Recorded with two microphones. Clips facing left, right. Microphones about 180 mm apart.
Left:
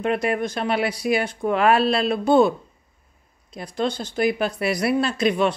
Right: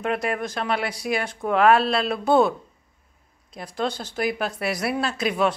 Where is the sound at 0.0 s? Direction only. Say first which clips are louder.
Left 3 dB; centre (ahead or behind).